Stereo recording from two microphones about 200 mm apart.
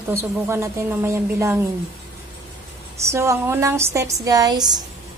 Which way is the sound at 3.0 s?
15° right (ahead or behind).